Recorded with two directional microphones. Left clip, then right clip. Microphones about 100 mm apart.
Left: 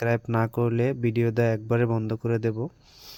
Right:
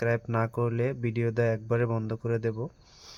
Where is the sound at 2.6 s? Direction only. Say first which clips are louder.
Left 4 dB; 20° left (ahead or behind).